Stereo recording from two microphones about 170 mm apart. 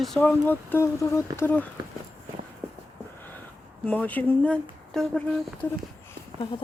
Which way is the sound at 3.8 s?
10° left (ahead or behind).